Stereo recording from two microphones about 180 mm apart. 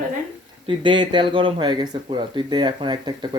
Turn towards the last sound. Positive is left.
turn(degrees=-25)  # may be behind; listen again after turning